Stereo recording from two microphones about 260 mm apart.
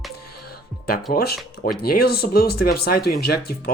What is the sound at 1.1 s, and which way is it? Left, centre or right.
Speech, left.